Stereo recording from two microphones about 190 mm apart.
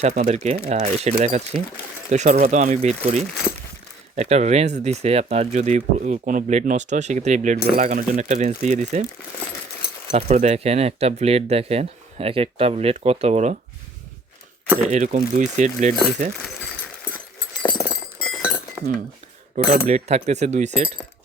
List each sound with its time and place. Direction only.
0.0 s speech: 40° right (ahead or behind)
4.1 s speech: 35° right (ahead or behind)
10.1 s speech: 35° right (ahead or behind)
14.8 s speech: 40° right (ahead or behind)
17.6 s clip-clop: 10° left (ahead or behind)
19.5 s speech: 35° right (ahead or behind)